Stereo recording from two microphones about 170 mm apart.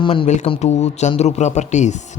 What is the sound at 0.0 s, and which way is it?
A man's voice, 30° left (ahead or behind).